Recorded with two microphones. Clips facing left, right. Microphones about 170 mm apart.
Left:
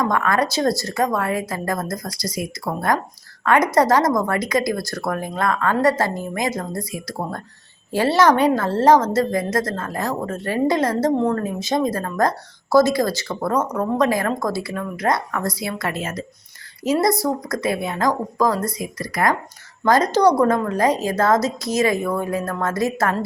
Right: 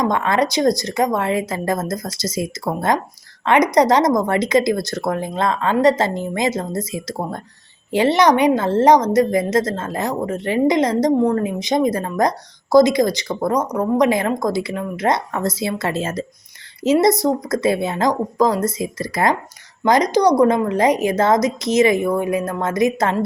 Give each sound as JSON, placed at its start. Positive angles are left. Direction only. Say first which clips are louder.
{"t": 0.0, "sound": "a woman's voice", "louder": "right 2 dB", "side_deg": -20}